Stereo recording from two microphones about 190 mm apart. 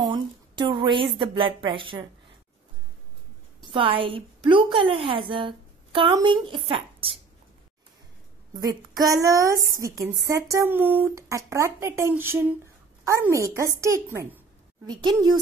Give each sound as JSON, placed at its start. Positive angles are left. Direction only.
{"t": 0.0, "sound": "a sound", "side_deg": -25}
{"t": 1.1, "sound": "a woman's voice", "side_deg": -25}
{"t": 3.7, "sound": "a woman's voice", "side_deg": -30}
{"t": 8.5, "sound": "a woman's voice", "side_deg": -20}